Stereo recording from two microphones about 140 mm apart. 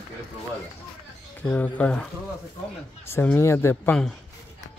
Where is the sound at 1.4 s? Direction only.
10° left (ahead or behind).